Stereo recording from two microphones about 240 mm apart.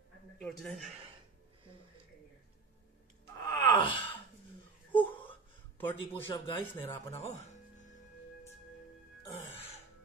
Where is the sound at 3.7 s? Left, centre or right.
Left.